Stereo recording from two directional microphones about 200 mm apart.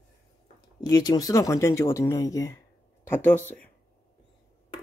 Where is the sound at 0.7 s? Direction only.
20° left (ahead or behind).